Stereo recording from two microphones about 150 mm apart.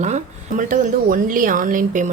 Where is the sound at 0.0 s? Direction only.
55° right (ahead or behind).